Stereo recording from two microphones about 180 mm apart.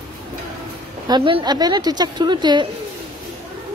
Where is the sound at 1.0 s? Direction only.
25° right (ahead or behind).